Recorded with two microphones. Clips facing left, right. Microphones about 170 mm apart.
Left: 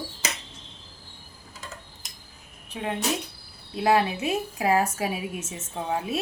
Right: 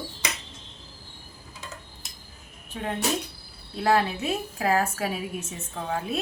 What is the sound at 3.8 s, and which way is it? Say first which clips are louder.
A woman's voice: left 1 dB; 15° left (ahead or behind).